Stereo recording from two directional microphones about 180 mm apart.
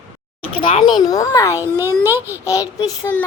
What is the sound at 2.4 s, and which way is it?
Child singing, 20° left (ahead or behind).